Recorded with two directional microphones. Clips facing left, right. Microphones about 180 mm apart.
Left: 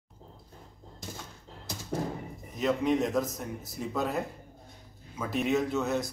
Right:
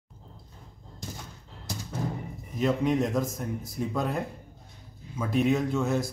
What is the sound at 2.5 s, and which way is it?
Speech, centre (ahead or behind).